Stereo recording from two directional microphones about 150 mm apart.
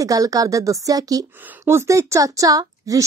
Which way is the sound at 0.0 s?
25° right (ahead or behind).